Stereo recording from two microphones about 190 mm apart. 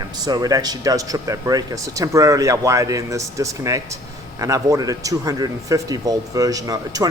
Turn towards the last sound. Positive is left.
turn(degrees=-20)  # may be behind; listen again after turning